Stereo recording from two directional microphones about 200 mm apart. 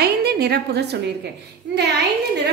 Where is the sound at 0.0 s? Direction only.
55° right (ahead or behind).